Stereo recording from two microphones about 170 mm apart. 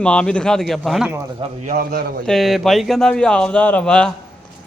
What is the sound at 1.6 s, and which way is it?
Speech, 55° right (ahead or behind).